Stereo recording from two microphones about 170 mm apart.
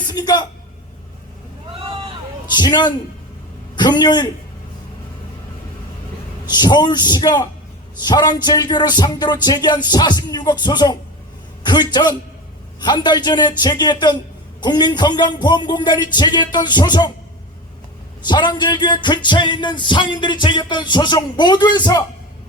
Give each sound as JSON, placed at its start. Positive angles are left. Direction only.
{"t": 0.1, "sound": "music", "side_deg": 25}
{"t": 2.5, "sound": "music", "side_deg": 25}
{"t": 6.4, "sound": "music", "side_deg": 25}
{"t": 11.6, "sound": "a man's voice", "side_deg": 25}
{"t": 12.8, "sound": "music", "side_deg": 25}
{"t": 18.3, "sound": "music", "side_deg": 25}